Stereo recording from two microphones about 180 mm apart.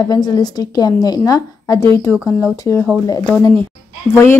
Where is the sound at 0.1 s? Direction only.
20° left (ahead or behind).